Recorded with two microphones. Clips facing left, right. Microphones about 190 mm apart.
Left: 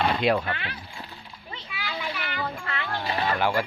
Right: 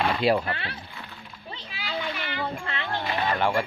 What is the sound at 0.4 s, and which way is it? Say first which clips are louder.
Speech: even; 30° right (ahead or behind).